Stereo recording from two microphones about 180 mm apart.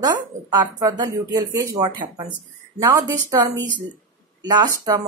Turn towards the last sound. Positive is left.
turn(degrees=-20)  # may be behind; listen again after turning